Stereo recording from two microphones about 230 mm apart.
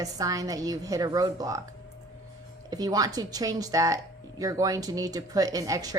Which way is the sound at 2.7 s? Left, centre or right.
Centre.